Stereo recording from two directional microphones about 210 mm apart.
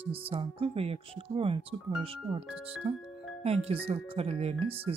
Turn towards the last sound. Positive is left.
turn(degrees=-30)  # may be behind; listen again after turning